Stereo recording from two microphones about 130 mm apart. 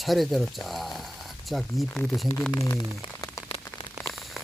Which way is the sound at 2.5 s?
25° left (ahead or behind).